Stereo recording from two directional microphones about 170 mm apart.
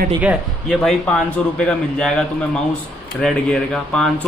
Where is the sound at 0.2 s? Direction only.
5° right (ahead or behind).